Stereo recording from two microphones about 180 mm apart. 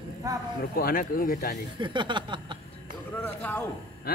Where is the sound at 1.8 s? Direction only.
25° right (ahead or behind).